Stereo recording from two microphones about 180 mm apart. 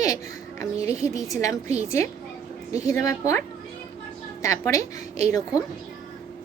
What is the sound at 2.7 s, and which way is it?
Speech, 15° left (ahead or behind).